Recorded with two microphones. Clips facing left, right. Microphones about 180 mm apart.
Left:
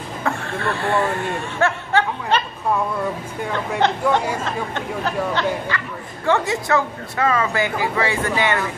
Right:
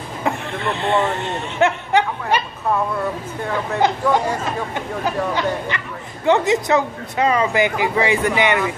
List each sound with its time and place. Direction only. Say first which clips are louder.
0.2 s speech: right 1 dB; 20° right (ahead or behind)
4.5 s speech: right 1 dB; 10° right (ahead or behind)